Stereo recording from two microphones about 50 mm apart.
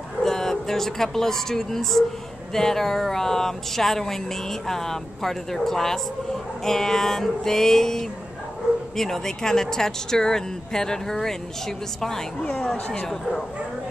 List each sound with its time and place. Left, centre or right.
0.2 s speech: centre
13.1 s speech: centre